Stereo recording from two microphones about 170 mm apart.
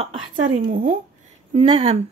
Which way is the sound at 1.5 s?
40° right (ahead or behind).